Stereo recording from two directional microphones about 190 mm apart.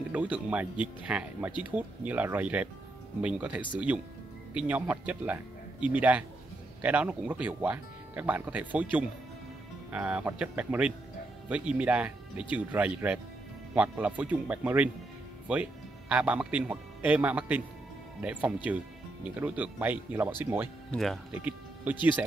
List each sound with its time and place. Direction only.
0.1 s speech: 5° right (ahead or behind)
20.9 s speech: centre (ahead or behind)
21.3 s speech: 10° right (ahead or behind)